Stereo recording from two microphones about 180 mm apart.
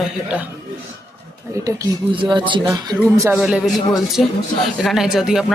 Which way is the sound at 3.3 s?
5° right (ahead or behind).